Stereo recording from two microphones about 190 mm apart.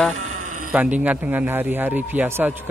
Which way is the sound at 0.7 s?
5° right (ahead or behind).